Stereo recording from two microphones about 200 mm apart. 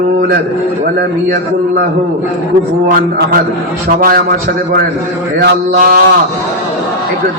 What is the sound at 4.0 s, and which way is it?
Speech, 50° right (ahead or behind).